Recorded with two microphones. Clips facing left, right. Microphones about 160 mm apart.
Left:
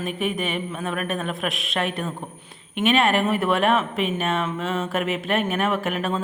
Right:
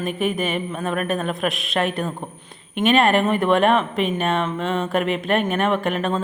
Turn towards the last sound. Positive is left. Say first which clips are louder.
# right 3 dB
turn(degrees=5)  # may be behind; listen again after turning